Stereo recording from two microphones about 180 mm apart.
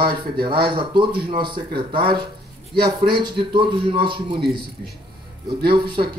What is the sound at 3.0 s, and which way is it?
Speech, 30° right (ahead or behind).